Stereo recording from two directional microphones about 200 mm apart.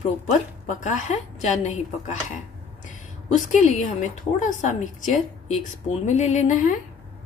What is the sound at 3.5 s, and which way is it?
A woman's voice, 35° left (ahead or behind).